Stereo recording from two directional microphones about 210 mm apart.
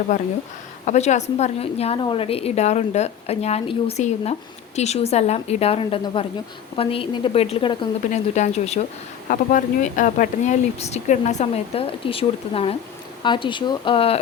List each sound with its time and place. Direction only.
0.9 s a woman's voice: 35° left (ahead or behind)